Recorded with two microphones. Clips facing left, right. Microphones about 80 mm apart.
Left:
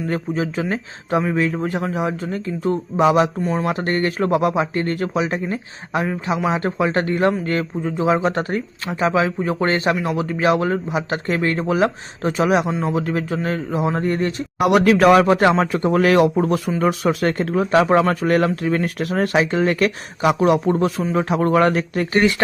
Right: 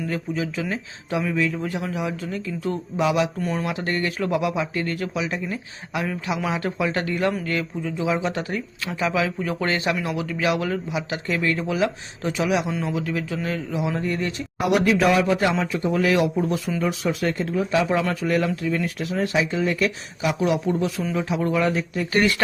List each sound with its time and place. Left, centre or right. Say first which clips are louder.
0.1 s speech: left 4 dB; left
3.7 s speech: left 5 dB; left
14.6 s speech: left 5 dB; left
22.1 s speech: left 3 dB; left